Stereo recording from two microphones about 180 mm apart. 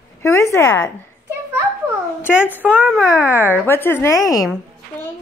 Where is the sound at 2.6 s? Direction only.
5° right (ahead or behind).